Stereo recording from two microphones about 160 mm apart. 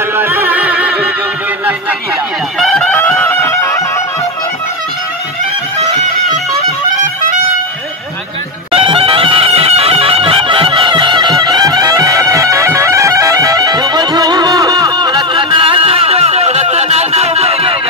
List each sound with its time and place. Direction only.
0.2 s music: 15° right (ahead or behind)
2.6 s music: 5° left (ahead or behind)
8.7 s bagpipes: 35° right (ahead or behind)